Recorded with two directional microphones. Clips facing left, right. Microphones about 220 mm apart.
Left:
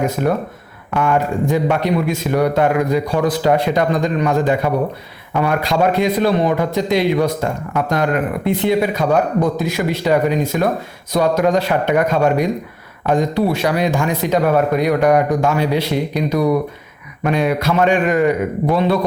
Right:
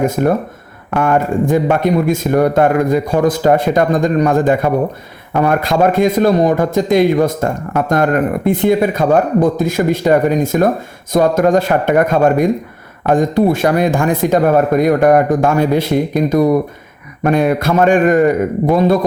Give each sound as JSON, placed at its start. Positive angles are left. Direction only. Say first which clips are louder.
{"t": 0.0, "sound": "speech", "louder": "right 4 dB", "side_deg": -50}